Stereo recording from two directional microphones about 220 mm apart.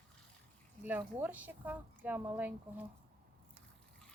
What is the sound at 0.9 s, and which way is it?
Speech, 10° right (ahead or behind).